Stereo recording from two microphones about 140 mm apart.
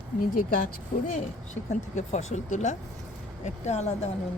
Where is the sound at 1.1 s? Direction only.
60° left (ahead or behind).